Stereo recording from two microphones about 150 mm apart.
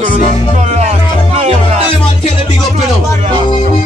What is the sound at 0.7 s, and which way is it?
Music, 50° right (ahead or behind).